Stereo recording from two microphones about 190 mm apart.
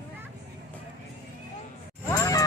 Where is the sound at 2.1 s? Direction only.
20° left (ahead or behind).